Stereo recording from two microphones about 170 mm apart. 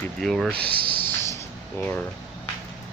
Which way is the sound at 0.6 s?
65° right (ahead or behind).